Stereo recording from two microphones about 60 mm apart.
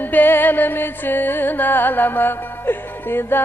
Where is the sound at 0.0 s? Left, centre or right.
Left.